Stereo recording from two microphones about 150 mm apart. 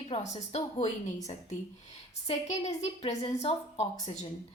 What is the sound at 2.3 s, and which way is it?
A woman's voice, 45° left (ahead or behind).